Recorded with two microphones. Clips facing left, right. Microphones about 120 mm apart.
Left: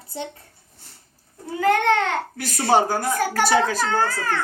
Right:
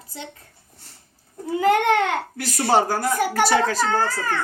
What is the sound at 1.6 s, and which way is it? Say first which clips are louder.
A child's voice: right 1 dB; 15° right (ahead or behind).